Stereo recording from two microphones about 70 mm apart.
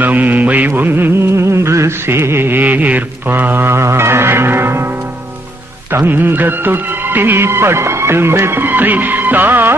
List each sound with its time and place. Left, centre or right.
0.0 s music: right
5.9 s speech: right